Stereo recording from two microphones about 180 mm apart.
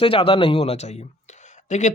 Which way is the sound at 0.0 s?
30° left (ahead or behind).